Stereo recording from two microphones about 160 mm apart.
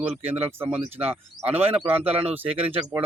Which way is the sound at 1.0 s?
40° right (ahead or behind).